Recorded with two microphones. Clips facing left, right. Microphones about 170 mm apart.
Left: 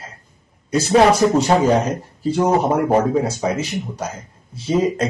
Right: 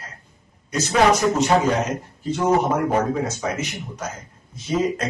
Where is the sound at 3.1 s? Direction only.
30° left (ahead or behind).